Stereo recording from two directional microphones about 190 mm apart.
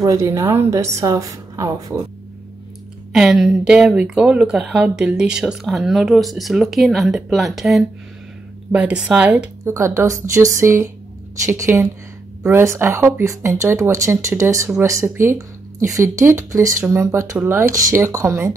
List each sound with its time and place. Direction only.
0.0 s speech: 15° right (ahead or behind)
3.1 s speech: centre (ahead or behind)